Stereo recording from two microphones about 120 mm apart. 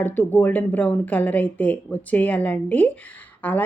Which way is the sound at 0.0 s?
15° left (ahead or behind).